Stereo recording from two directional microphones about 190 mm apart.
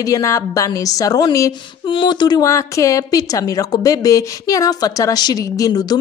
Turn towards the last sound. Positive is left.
turn(degrees=20)  # may be behind; listen again after turning